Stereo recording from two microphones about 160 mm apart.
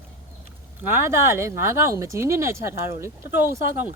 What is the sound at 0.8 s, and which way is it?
Speech, 15° right (ahead or behind).